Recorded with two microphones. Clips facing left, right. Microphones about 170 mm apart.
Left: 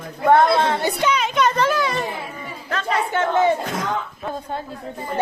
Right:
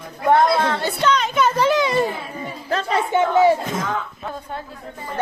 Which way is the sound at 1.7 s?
25° right (ahead or behind).